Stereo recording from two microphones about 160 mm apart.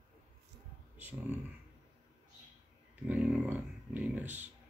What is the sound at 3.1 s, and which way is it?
Speech, 10° right (ahead or behind).